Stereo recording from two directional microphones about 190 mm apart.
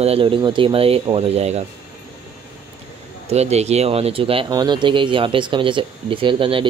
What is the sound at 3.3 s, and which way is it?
Speech, 35° right (ahead or behind).